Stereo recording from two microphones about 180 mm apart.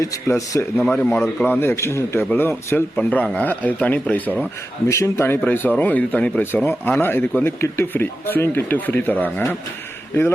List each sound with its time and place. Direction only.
0.0 s speech: 20° left (ahead or behind)
0.9 s speech: 5° left (ahead or behind)